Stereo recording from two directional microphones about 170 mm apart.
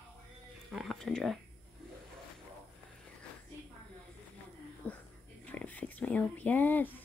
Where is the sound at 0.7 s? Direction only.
Centre (ahead or behind).